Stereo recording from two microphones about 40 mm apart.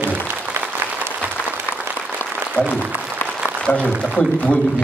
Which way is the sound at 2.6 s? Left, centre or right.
Right.